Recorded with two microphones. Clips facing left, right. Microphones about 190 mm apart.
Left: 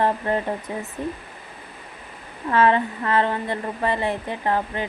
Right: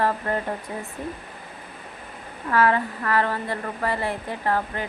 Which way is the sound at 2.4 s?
25° left (ahead or behind).